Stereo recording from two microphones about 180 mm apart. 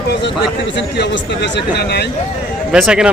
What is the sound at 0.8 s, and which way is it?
Speech, 75° left (ahead or behind).